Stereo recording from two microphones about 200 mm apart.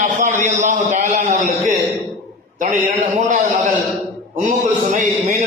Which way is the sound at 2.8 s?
40° right (ahead or behind).